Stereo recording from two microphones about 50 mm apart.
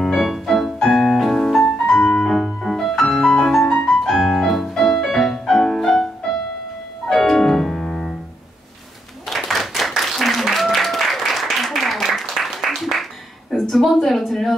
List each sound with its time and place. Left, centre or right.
0.1 s piano: centre
1.8 s music: left
2.2 s music: centre
4.1 s music: centre
7.1 s piano: centre
9.3 s applause: centre
13.5 s a sound: centre